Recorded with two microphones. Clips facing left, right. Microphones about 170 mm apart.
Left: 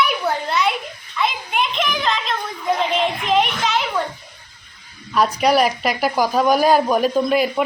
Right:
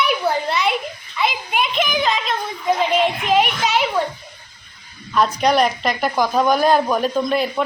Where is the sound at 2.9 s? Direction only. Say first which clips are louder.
Right 2 dB; 5° right (ahead or behind).